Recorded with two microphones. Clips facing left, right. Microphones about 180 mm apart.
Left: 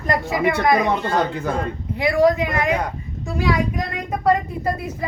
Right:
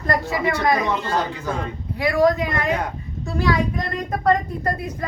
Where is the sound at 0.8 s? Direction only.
55° left (ahead or behind).